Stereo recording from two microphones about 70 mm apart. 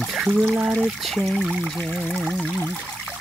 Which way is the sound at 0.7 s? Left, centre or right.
Centre.